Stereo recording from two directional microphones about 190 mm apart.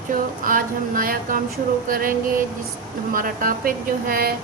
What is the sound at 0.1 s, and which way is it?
A woman's voice, 45° right (ahead or behind).